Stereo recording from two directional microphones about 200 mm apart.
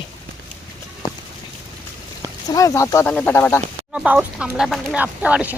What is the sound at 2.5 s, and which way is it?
Speech, 15° left (ahead or behind).